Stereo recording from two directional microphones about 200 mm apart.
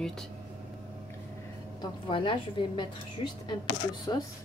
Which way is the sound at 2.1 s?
25° left (ahead or behind).